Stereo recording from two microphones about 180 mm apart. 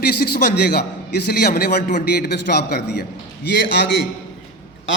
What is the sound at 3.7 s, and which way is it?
Speech, 75° left (ahead or behind).